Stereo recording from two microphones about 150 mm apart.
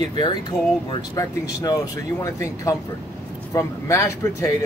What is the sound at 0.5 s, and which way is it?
Speech, 5° left (ahead or behind).